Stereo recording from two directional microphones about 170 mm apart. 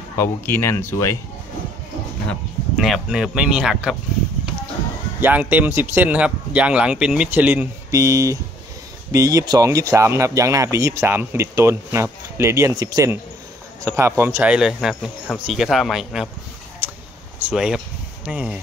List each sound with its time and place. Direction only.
0.2 s speech: 15° left (ahead or behind)
2.7 s speech: centre (ahead or behind)
5.2 s speech: 10° right (ahead or behind)
16.8 s a sound: 10° right (ahead or behind)
17.4 s speech: 5° right (ahead or behind)